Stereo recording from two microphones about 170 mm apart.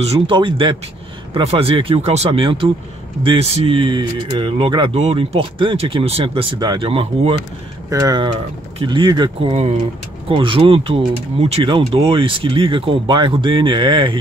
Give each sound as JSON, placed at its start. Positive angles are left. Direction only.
{"t": 0.0, "sound": "speech", "side_deg": -30}